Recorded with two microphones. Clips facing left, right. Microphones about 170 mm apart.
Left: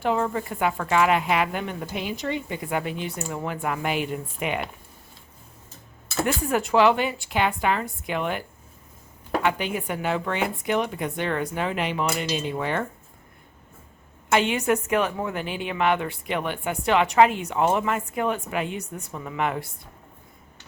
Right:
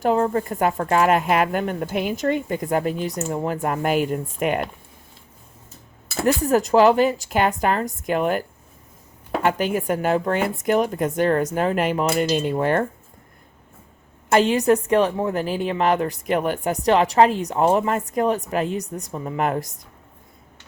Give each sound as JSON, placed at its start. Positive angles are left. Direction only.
{"t": 0.0, "sound": "speech", "side_deg": -40}
{"t": 6.2, "sound": "a woman's voice", "side_deg": -40}
{"t": 14.3, "sound": "a woman's voice", "side_deg": -40}